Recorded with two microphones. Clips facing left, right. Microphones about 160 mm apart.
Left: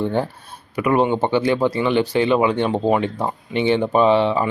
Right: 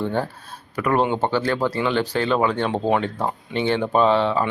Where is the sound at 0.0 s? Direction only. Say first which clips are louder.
Left 3 dB; 15° left (ahead or behind).